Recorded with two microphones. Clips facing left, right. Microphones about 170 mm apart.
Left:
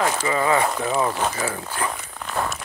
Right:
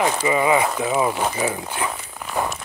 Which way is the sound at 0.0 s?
15° right (ahead or behind).